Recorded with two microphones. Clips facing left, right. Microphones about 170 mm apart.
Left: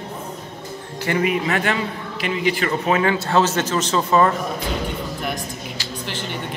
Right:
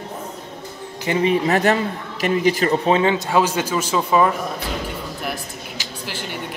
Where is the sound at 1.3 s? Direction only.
40° right (ahead or behind).